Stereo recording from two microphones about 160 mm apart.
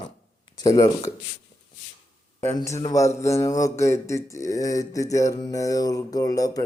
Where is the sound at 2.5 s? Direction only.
20° left (ahead or behind).